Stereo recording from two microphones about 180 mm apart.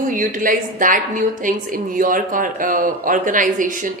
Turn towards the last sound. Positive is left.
turn(degrees=-45)  # may be behind; listen again after turning